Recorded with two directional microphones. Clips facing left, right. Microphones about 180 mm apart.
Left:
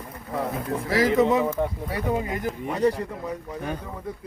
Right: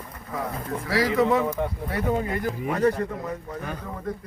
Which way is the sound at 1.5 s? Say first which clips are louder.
Left 1 dB; 10° left (ahead or behind).